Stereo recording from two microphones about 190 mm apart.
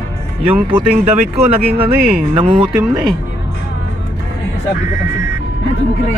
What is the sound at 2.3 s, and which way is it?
Speech, 25° right (ahead or behind).